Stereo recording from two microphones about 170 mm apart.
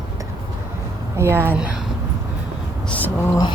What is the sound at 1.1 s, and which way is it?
Speech, 15° right (ahead or behind).